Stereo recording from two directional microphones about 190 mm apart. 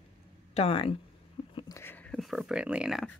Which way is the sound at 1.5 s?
25° left (ahead or behind).